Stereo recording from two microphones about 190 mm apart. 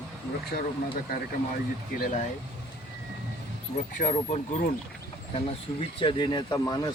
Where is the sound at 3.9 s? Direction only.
40° left (ahead or behind).